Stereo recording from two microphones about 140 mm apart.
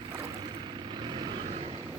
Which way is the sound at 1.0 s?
35° right (ahead or behind).